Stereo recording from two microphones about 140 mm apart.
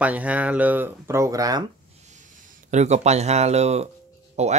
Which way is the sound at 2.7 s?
55° right (ahead or behind).